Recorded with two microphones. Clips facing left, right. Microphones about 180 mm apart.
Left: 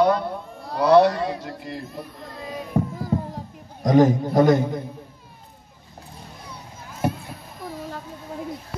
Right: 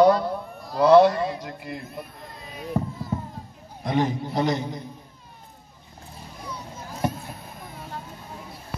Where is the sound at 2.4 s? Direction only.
90° left.